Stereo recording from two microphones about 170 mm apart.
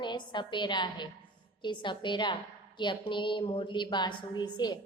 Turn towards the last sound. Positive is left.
turn(degrees=25)  # may be behind; listen again after turning